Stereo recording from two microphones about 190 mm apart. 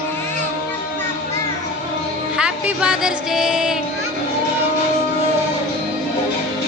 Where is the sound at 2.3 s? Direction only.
5° right (ahead or behind).